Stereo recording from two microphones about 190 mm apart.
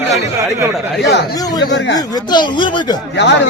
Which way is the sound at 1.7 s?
65° left (ahead or behind).